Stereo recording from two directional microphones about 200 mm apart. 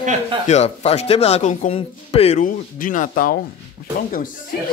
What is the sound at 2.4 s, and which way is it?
Speech, 40° left (ahead or behind).